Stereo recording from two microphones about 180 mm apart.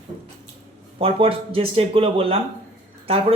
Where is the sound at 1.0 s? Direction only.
30° right (ahead or behind).